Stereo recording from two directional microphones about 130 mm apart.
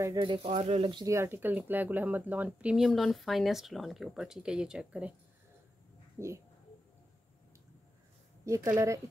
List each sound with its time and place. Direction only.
0.2 s speech: 40° right (ahead or behind)
0.5 s speech: 55° right (ahead or behind)
1.0 s speech: 20° right (ahead or behind)
6.1 s speech: 20° right (ahead or behind)
8.5 s a woman's voice: 25° right (ahead or behind)